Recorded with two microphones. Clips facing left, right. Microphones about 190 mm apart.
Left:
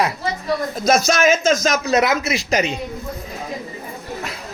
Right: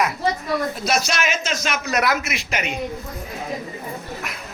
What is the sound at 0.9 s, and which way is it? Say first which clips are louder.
Speech: left 10 dB; 45° left (ahead or behind).